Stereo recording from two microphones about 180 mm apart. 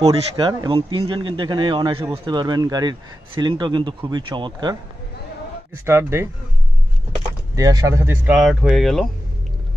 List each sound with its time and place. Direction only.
0.0 s a man's voice: 30° right (ahead or behind)
5.9 s speech: 15° right (ahead or behind)
7.5 s speech: 20° right (ahead or behind); by 9.1 s centre (ahead or behind)